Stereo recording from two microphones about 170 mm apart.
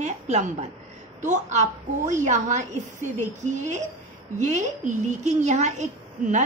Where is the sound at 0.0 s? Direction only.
40° right (ahead or behind).